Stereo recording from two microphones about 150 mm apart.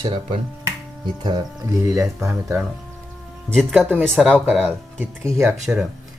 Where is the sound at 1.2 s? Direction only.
25° right (ahead or behind).